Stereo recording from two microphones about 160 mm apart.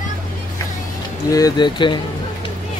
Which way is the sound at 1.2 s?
20° left (ahead or behind).